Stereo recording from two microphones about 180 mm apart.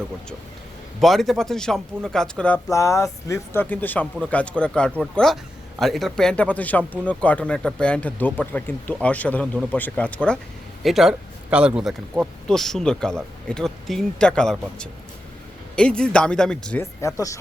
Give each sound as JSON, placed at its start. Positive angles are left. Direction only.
{"t": 1.0, "sound": "speech", "side_deg": 0}
{"t": 2.6, "sound": "speech", "side_deg": 15}
{"t": 15.7, "sound": "speech", "side_deg": 5}
{"t": 17.2, "sound": "speech", "side_deg": 15}